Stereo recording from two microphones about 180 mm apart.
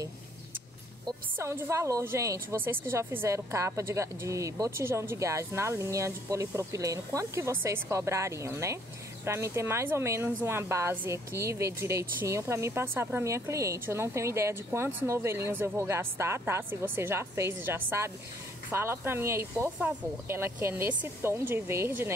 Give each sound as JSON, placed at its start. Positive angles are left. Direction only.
{"t": 1.0, "sound": "speech", "side_deg": -15}